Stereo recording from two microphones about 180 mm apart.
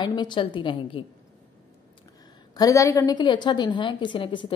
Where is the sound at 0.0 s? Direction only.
25° left (ahead or behind).